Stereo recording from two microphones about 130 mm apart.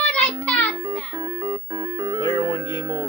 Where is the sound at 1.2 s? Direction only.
30° right (ahead or behind).